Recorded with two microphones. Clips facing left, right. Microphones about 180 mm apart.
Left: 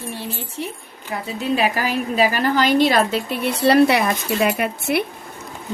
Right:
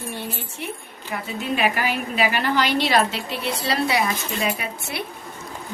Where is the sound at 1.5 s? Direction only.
35° left (ahead or behind); by 5.0 s 60° left (ahead or behind).